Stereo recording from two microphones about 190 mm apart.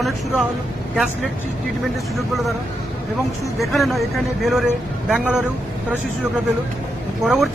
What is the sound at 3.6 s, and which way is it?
Speech, centre (ahead or behind).